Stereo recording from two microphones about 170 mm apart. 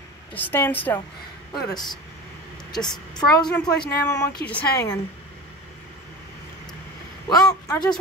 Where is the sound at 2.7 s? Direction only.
25° left (ahead or behind).